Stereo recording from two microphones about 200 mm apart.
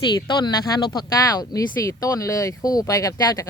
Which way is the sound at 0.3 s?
20° left (ahead or behind).